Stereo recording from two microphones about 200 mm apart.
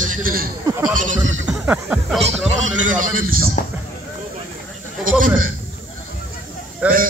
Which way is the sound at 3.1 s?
45° right (ahead or behind).